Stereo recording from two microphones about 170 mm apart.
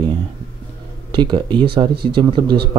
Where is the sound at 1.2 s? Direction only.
25° right (ahead or behind).